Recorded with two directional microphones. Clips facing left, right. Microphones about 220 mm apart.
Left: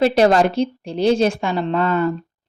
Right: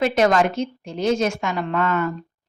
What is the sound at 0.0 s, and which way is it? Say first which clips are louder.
Speech: left 4 dB; 35° left (ahead or behind).